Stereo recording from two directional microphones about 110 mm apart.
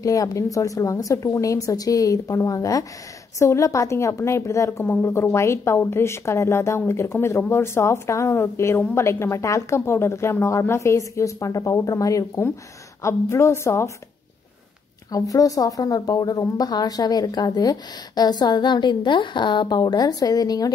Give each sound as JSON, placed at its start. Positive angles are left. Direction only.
{"t": 0.0, "sound": "a woman's voice", "side_deg": 30}
{"t": 15.0, "sound": "speech", "side_deg": 30}